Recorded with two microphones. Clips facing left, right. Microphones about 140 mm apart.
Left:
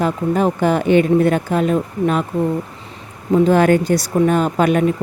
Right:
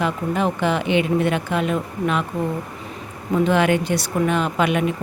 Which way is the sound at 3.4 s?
40° left (ahead or behind).